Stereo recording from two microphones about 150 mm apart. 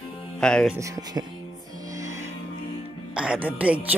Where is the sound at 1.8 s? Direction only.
20° right (ahead or behind).